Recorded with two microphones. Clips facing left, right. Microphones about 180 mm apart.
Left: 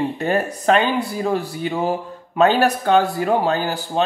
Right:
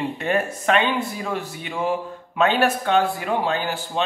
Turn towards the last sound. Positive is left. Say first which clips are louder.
# left 4 dB
turn(degrees=40)  # may be behind; listen again after turning